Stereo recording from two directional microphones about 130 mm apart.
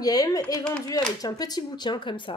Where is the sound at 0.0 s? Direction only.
30° left (ahead or behind).